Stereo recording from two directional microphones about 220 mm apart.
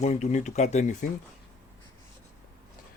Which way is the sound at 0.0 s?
30° left (ahead or behind).